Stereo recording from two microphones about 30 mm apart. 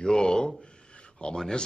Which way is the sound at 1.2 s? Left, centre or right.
Left.